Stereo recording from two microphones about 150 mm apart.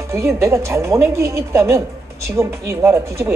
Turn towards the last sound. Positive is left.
turn(degrees=-20)  # may be behind; listen again after turning